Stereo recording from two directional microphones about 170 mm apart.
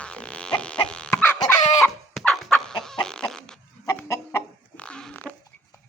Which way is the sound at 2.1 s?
5° left (ahead or behind).